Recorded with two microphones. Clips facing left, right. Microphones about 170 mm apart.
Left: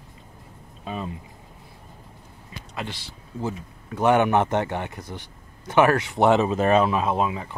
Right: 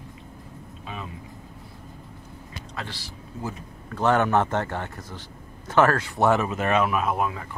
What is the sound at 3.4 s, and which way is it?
A man's voice, 15° left (ahead or behind).